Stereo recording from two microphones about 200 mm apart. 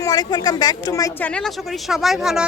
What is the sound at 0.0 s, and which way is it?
Speech, 20° left (ahead or behind).